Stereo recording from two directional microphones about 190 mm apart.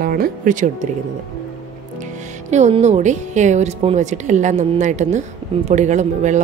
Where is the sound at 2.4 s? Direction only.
35° right (ahead or behind).